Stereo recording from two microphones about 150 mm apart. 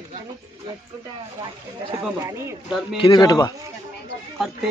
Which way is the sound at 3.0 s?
25° left (ahead or behind).